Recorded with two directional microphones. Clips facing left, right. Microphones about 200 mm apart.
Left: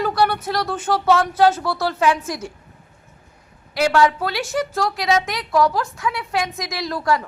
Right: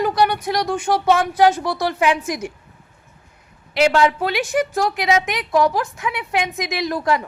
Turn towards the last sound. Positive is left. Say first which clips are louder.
# right 1 dB
turn(degrees=-20)  # may be behind; listen again after turning